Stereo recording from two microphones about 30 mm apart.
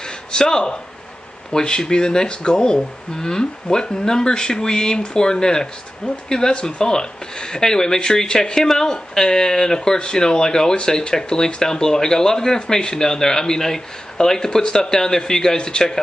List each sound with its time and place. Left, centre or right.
0.3 s speech: left